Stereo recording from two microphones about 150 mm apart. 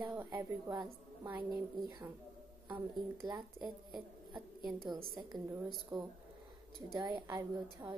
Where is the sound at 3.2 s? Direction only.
30° right (ahead or behind).